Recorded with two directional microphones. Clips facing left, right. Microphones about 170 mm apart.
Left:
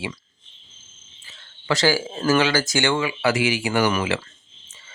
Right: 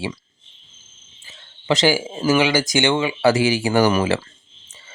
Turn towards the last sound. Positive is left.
turn(degrees=-35)  # may be behind; listen again after turning